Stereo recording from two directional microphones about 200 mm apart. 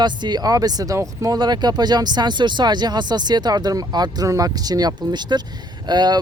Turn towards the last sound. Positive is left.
turn(degrees=-20)  # may be behind; listen again after turning